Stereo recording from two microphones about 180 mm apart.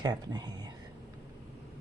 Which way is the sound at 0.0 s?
25° right (ahead or behind).